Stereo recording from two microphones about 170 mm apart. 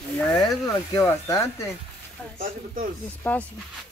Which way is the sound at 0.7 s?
15° left (ahead or behind).